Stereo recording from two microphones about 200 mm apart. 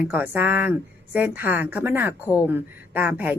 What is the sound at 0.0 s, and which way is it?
Speech, 10° right (ahead or behind).